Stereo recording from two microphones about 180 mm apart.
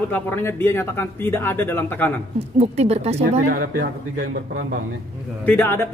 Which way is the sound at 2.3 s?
35° right (ahead or behind).